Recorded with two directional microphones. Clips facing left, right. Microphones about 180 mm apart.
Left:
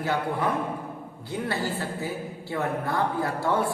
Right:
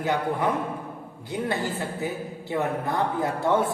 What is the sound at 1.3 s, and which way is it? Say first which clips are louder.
A man's voice: right 1 dB; 20° right (ahead or behind).